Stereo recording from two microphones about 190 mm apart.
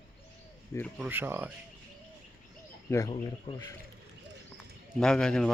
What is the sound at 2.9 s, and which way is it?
Speech, 15° left (ahead or behind).